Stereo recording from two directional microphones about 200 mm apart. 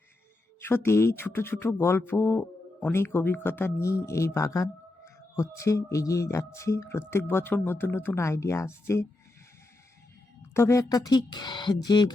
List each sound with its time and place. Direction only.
0.6 s speech: 10° left (ahead or behind)
10.5 s speech: 15° left (ahead or behind)